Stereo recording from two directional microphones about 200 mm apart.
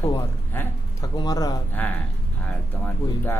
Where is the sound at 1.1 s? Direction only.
20° left (ahead or behind).